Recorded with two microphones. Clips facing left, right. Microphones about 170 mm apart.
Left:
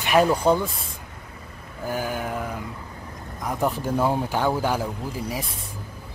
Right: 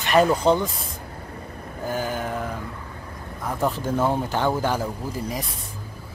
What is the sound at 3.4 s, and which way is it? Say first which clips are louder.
Speech: even; 15° left (ahead or behind).